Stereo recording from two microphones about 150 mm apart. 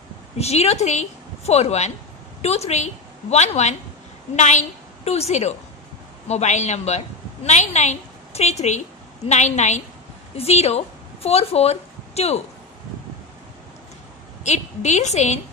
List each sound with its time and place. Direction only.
0.4 s a woman's voice: 45° left (ahead or behind)
14.4 s a woman's voice: 50° left (ahead or behind)